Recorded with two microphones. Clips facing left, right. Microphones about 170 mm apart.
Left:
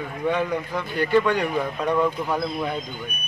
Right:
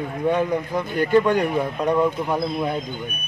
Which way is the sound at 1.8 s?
15° right (ahead or behind).